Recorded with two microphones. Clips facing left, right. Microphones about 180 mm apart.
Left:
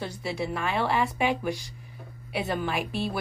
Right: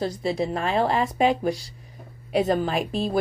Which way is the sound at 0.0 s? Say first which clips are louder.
Right 6 dB; 35° right (ahead or behind).